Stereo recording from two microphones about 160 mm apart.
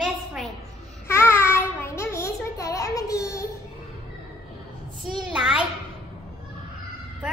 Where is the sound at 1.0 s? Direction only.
15° left (ahead or behind).